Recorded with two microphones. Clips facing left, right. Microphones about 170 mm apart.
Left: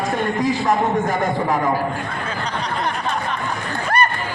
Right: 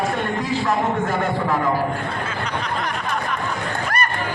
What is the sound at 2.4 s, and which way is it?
Snicker, 30° left (ahead or behind).